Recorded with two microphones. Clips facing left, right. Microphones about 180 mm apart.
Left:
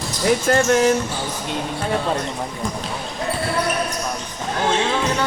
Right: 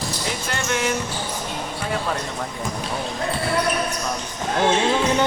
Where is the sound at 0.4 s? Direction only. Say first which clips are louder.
Left 8 dB; 40° left (ahead or behind).